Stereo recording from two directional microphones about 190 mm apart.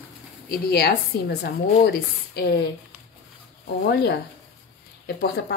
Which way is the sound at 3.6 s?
60° left (ahead or behind).